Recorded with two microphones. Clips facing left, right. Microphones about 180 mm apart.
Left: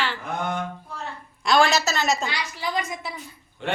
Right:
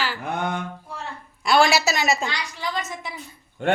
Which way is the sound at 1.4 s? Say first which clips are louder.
Right 1 dB; 5° right (ahead or behind).